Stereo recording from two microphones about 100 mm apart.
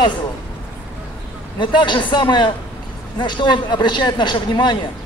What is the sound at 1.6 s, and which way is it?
A man's voice, 50° left (ahead or behind).